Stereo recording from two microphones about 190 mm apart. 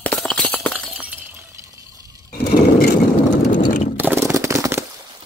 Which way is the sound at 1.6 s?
15° right (ahead or behind).